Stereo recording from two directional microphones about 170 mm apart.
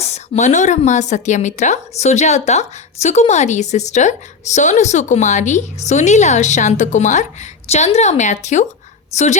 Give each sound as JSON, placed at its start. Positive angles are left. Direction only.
{"t": 0.0, "sound": "a woman's voice", "side_deg": 40}